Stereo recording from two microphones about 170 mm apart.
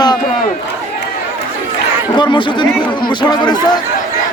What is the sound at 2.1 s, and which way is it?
Speech, 25° left (ahead or behind).